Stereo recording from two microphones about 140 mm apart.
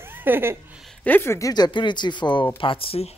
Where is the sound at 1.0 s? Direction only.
15° left (ahead or behind).